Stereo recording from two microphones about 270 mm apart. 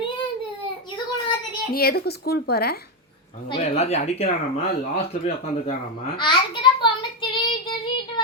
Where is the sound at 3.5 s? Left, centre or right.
Left.